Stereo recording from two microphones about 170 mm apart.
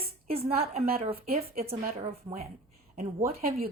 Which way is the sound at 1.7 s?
35° right (ahead or behind).